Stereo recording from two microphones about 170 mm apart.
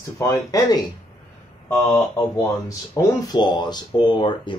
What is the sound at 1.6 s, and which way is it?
Speech, 10° left (ahead or behind).